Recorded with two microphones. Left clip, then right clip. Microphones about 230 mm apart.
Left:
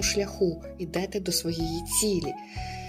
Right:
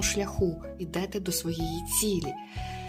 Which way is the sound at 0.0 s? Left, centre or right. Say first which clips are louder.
Left 2 dB; right.